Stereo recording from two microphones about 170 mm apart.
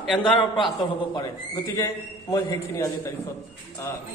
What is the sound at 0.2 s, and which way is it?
A man's voice, 30° left (ahead or behind).